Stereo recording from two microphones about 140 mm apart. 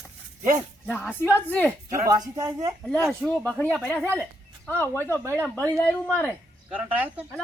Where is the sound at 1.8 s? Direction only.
20° right (ahead or behind).